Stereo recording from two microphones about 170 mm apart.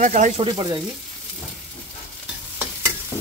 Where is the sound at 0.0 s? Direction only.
45° right (ahead or behind).